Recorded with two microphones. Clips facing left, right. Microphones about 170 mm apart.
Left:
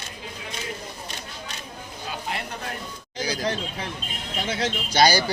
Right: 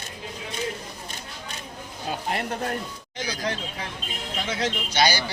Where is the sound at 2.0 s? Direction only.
45° right (ahead or behind).